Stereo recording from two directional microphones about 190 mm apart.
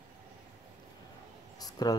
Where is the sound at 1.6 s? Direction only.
20° left (ahead or behind).